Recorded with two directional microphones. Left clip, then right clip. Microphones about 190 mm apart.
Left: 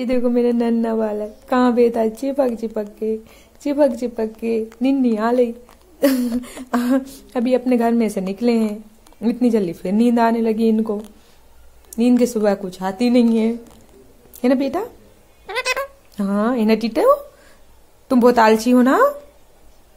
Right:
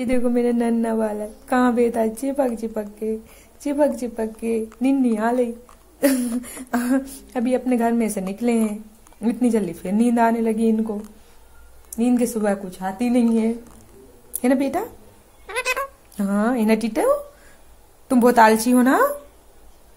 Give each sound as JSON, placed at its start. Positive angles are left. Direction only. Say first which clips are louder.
{"t": 0.0, "sound": "a woman's voice", "louder": "left 3 dB", "side_deg": 10}
{"t": 14.3, "sound": "a woman's voice", "louder": "left 2 dB", "side_deg": 10}
{"t": 15.4, "sound": "a sound", "louder": "left 2 dB", "side_deg": 20}
{"t": 16.2, "sound": "a woman's voice", "louder": "left 2 dB", "side_deg": 10}